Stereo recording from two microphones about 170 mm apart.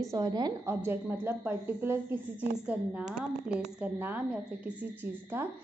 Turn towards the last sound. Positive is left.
turn(degrees=-10)  # may be behind; listen again after turning